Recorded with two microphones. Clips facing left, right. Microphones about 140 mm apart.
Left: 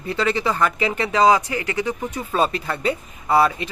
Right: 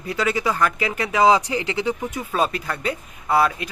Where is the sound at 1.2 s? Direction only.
15° right (ahead or behind).